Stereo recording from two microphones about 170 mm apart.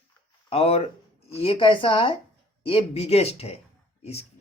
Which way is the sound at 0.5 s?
35° left (ahead or behind).